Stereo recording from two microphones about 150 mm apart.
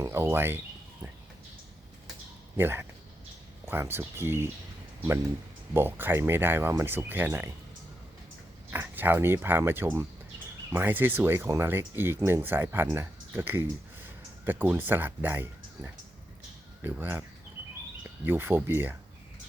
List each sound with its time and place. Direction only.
0.0 s speech: 15° right (ahead or behind)
2.6 s speech: 15° right (ahead or behind)
5.7 s speech: 15° right (ahead or behind)
8.7 s speech: 15° right (ahead or behind)
18.3 s speech: 15° right (ahead or behind)